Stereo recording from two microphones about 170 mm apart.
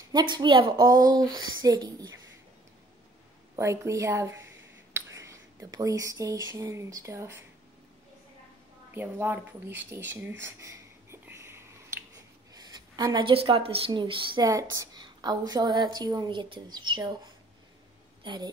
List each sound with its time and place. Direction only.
0.1 s speech: 25° right (ahead or behind)
3.5 s speech: 15° right (ahead or behind)
8.9 s speech: 10° right (ahead or behind)
10.4 s a sound: 15° right (ahead or behind)
12.5 s a woman's voice: 25° right (ahead or behind)